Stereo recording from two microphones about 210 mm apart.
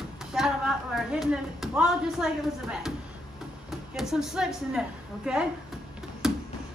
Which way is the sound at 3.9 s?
Centre (ahead or behind).